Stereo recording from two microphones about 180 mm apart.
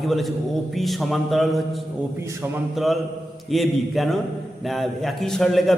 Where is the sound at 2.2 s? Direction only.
15° right (ahead or behind).